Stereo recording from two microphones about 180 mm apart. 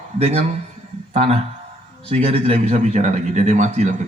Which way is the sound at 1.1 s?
35° right (ahead or behind).